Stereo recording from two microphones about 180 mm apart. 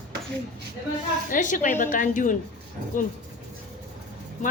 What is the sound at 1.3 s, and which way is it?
A woman's voice, 45° left (ahead or behind).